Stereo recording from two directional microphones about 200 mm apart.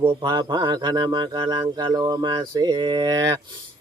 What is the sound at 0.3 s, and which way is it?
Speech, 20° right (ahead or behind).